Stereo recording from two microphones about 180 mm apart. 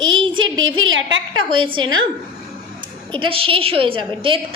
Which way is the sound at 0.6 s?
90° right.